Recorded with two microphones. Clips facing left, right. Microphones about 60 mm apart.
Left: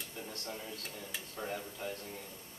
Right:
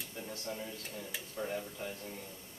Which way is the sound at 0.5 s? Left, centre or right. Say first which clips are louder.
Right 2 dB; centre.